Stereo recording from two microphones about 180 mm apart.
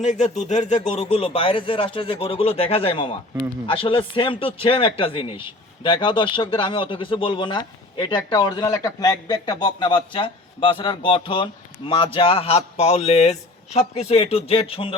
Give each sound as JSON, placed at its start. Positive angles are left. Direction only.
{"t": 0.0, "sound": "a man's voice", "side_deg": 40}